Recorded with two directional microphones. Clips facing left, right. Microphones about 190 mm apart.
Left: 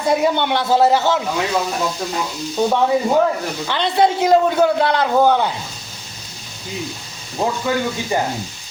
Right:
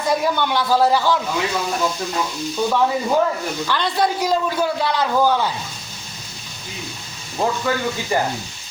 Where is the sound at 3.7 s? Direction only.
20° left (ahead or behind).